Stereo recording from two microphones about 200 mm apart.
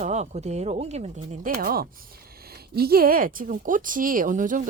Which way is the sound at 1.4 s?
45° right (ahead or behind).